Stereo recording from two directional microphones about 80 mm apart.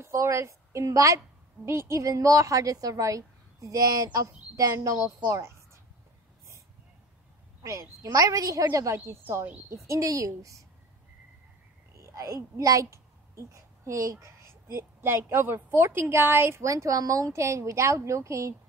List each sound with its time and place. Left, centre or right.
0.0 s a woman's voice: right
7.6 s a woman's voice: right
12.0 s speech: right